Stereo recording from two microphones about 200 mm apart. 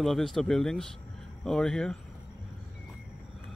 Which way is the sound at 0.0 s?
Centre (ahead or behind).